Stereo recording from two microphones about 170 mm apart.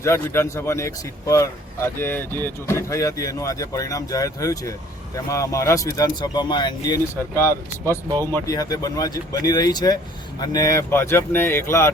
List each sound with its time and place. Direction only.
0.0 s speech: 15° left (ahead or behind)